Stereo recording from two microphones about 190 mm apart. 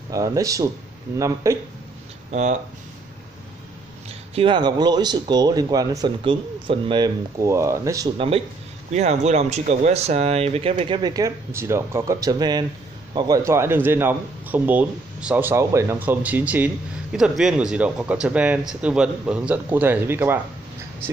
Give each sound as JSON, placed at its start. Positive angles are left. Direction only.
{"t": 0.1, "sound": "speech", "side_deg": -15}
{"t": 4.4, "sound": "speech", "side_deg": -25}
{"t": 8.9, "sound": "speech", "side_deg": -35}